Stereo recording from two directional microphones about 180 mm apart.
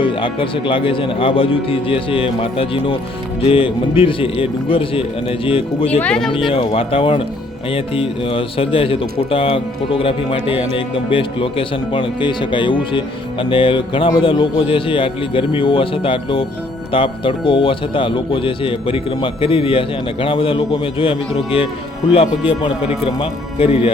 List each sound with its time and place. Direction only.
0.0 s speech: 30° left (ahead or behind)
6.0 s speech: 5° left (ahead or behind)
6.3 s speech: 30° left (ahead or behind)
22.5 s speech: 10° right (ahead or behind)
23.1 s speech: 30° left (ahead or behind)